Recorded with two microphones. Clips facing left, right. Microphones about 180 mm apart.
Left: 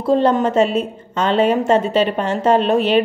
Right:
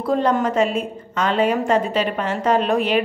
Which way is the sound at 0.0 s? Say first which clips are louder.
Left 4 dB; 25° left (ahead or behind).